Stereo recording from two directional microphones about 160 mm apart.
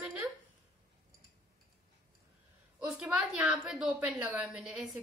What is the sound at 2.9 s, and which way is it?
A woman's voice, 5° right (ahead or behind).